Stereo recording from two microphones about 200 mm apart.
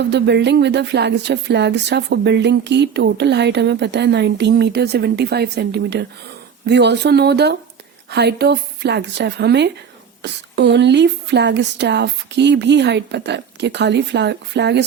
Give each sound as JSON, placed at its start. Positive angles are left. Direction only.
{"t": 0.0, "sound": "speech", "side_deg": -60}